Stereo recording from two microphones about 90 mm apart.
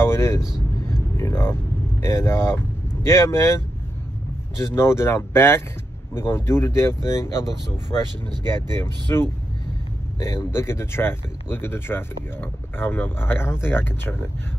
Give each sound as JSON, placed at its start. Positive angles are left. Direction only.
{"t": 0.0, "sound": "vehicle", "side_deg": 30}
{"t": 0.8, "sound": "speech", "side_deg": 30}
{"t": 8.7, "sound": "speech", "side_deg": 30}